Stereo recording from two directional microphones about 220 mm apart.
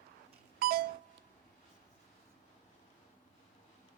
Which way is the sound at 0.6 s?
40° right (ahead or behind).